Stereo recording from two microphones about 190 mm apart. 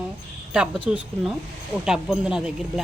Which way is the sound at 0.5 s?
5° right (ahead or behind).